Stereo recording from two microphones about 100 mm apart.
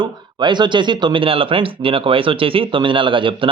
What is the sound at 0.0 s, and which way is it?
Speech, 50° right (ahead or behind).